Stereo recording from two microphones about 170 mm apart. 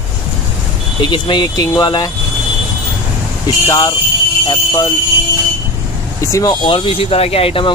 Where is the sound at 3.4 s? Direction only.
20° left (ahead or behind).